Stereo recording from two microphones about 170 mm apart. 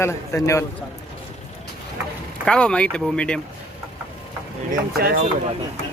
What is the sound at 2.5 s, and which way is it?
Speech, 5° left (ahead or behind).